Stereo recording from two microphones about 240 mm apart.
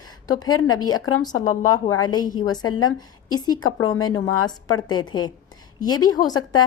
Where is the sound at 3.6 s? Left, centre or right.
Left.